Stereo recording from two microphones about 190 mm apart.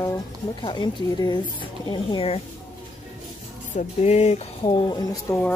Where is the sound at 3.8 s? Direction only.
35° left (ahead or behind).